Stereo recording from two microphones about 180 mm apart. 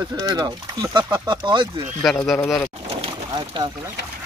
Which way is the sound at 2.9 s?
30° right (ahead or behind).